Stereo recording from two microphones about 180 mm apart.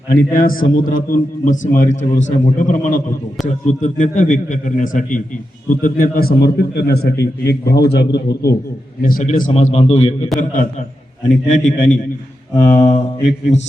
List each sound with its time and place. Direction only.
0.1 s a man's voice: 50° left (ahead or behind)
9.0 s a man's voice: 50° left (ahead or behind)
9.4 s a man's voice: 40° left (ahead or behind)
11.3 s a man's voice: 45° left (ahead or behind)